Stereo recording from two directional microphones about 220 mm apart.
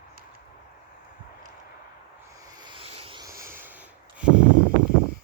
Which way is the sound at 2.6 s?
25° right (ahead or behind).